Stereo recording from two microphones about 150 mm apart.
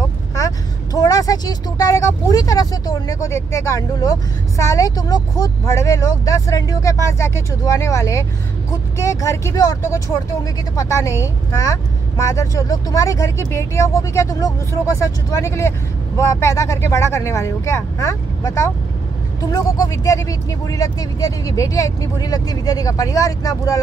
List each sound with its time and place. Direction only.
0.9 s speech: 25° left (ahead or behind)